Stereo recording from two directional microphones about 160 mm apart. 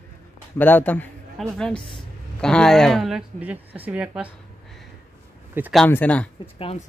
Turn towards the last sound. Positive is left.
turn(degrees=35)  # may be behind; listen again after turning